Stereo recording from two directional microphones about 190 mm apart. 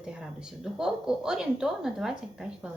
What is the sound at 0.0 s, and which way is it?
A woman's voice, 5° right (ahead or behind).